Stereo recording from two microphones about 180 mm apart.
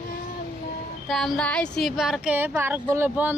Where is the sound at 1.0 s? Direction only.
Centre (ahead or behind).